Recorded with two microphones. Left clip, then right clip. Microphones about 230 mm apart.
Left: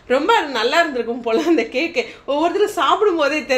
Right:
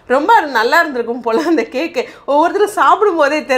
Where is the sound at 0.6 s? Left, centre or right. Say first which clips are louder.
Right 5 dB; right.